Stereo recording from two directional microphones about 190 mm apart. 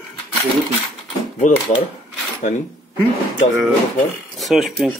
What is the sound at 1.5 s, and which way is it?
Speech, 40° left (ahead or behind).